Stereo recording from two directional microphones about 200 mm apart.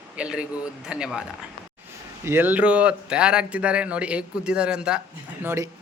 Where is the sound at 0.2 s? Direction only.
5° right (ahead or behind).